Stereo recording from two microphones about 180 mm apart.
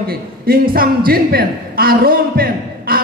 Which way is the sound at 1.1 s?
55° right (ahead or behind).